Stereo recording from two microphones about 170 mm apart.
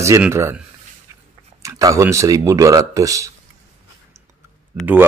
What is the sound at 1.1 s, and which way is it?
Dog, 20° right (ahead or behind).